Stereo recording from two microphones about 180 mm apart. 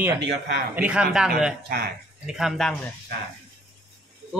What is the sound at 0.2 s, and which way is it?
Speech, 70° right (ahead or behind).